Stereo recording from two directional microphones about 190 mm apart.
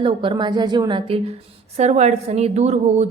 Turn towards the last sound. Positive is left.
turn(degrees=-35)  # may be behind; listen again after turning